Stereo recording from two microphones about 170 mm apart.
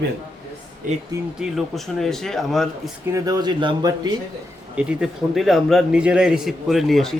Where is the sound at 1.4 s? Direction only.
Centre (ahead or behind).